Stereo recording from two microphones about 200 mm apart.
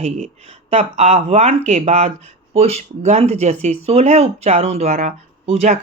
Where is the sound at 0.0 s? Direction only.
30° right (ahead or behind).